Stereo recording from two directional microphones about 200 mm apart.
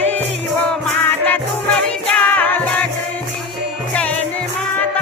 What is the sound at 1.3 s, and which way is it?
Music, 5° left (ahead or behind).